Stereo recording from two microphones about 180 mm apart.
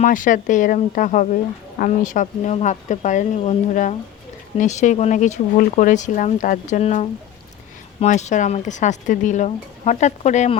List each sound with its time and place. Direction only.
0.0 s speech: 45° left (ahead or behind)